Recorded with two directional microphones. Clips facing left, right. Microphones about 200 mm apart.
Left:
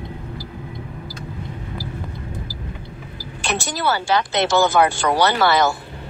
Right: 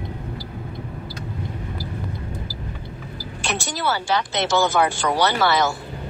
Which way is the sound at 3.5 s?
60° left (ahead or behind).